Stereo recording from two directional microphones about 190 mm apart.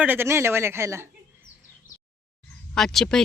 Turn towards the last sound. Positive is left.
turn(degrees=0)  # may be behind; listen again after turning